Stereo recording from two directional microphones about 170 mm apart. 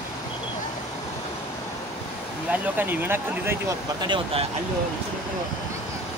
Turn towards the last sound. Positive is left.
turn(degrees=-30)  # may be behind; listen again after turning